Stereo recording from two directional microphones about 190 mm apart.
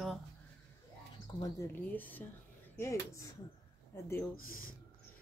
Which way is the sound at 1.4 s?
15° left (ahead or behind).